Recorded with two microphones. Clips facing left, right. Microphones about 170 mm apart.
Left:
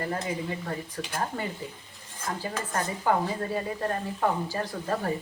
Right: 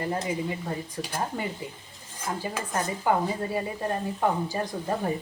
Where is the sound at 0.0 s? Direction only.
20° right (ahead or behind).